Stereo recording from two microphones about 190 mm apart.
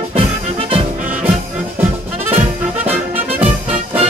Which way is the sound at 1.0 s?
10° right (ahead or behind).